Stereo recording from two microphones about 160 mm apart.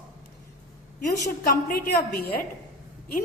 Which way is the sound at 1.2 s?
60° left (ahead or behind).